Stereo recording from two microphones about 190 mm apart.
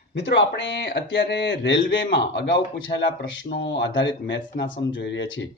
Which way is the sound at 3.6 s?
70° left (ahead or behind).